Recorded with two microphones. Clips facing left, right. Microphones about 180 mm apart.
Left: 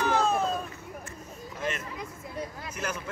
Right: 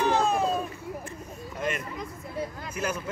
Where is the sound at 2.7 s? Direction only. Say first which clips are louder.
Right 4 dB; 5° right (ahead or behind).